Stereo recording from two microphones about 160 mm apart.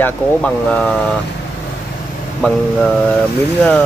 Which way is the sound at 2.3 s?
5° left (ahead or behind).